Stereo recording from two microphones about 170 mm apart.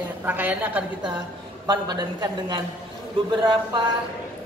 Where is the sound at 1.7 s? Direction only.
25° right (ahead or behind).